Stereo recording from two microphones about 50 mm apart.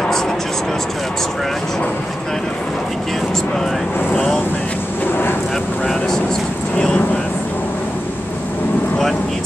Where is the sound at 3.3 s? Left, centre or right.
Centre.